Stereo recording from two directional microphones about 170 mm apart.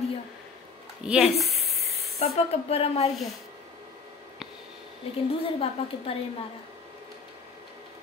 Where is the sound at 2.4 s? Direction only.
35° left (ahead or behind).